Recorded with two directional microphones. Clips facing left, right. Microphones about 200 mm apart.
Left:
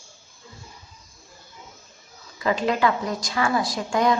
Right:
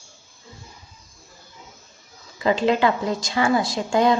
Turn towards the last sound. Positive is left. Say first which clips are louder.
# right 3 dB
turn(degrees=-30)  # may be behind; listen again after turning